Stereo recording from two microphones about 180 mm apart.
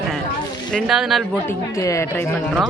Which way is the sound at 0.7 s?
Centre (ahead or behind).